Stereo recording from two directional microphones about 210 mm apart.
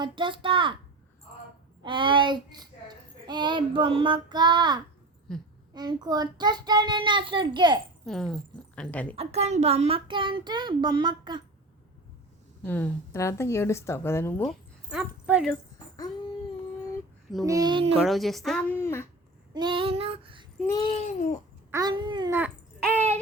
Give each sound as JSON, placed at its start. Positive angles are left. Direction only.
{"t": 0.0, "sound": "a child's voice", "side_deg": -25}
{"t": 1.8, "sound": "a child's voice", "side_deg": -25}
{"t": 5.3, "sound": "speech", "side_deg": 0}
{"t": 5.7, "sound": "a child's voice", "side_deg": -20}
{"t": 8.0, "sound": "speech", "side_deg": 0}
{"t": 9.1, "sound": "a child's voice", "side_deg": -30}
{"t": 12.6, "sound": "speech", "side_deg": 10}
{"t": 14.8, "sound": "speech", "side_deg": -5}
{"t": 17.4, "sound": "a child's voice", "side_deg": -15}
{"t": 18.0, "sound": "speech", "side_deg": 0}
{"t": 19.5, "sound": "a child's voice", "side_deg": -20}
{"t": 20.7, "sound": "speech", "side_deg": 20}
{"t": 21.7, "sound": "a child's voice", "side_deg": -20}
{"t": 22.8, "sound": "a sound", "side_deg": 5}